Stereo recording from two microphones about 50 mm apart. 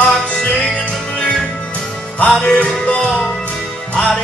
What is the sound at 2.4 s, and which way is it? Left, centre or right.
Music, left.